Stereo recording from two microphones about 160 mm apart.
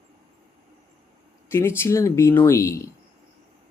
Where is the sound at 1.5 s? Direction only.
15° left (ahead or behind).